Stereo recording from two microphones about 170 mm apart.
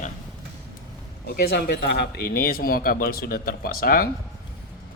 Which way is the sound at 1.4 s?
65° left (ahead or behind).